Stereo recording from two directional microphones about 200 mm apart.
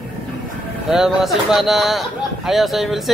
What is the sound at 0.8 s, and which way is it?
Speech, centre (ahead or behind).